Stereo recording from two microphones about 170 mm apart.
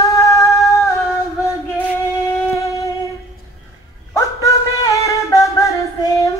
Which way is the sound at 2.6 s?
20° left (ahead or behind).